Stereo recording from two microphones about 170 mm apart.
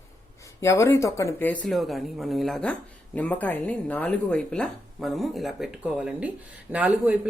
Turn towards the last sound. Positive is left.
turn(degrees=-10)  # may be behind; listen again after turning